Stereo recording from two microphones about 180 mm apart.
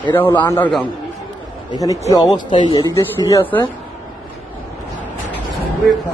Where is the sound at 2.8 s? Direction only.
20° left (ahead or behind).